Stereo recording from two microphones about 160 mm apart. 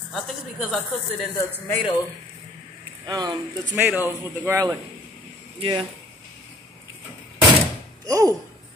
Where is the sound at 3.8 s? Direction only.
10° right (ahead or behind).